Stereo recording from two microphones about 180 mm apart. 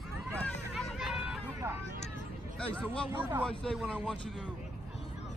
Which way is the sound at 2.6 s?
5° left (ahead or behind).